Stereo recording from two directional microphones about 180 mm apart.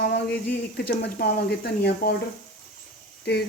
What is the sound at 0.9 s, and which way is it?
Speech, 65° left (ahead or behind).